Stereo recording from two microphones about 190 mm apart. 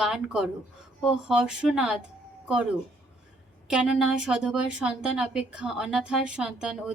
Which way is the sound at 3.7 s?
5° right (ahead or behind).